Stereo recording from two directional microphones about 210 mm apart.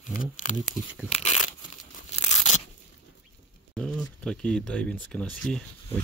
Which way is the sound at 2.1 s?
35° left (ahead or behind).